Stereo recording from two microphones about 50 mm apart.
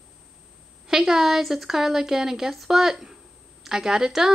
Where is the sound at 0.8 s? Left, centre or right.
Centre.